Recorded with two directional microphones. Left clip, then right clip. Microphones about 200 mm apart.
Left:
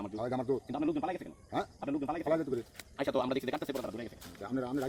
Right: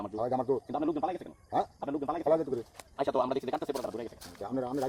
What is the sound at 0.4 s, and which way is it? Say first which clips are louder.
Speech: right 3 dB; 25° left (ahead or behind).